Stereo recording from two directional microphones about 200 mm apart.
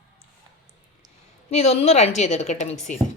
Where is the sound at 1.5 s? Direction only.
30° left (ahead or behind).